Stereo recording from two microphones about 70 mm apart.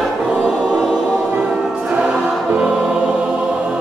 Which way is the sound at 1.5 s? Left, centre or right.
Centre.